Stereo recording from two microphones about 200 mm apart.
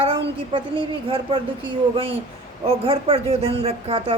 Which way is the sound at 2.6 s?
30° right (ahead or behind).